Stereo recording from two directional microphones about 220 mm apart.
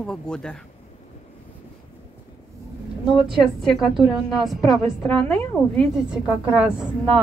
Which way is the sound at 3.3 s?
Centre (ahead or behind).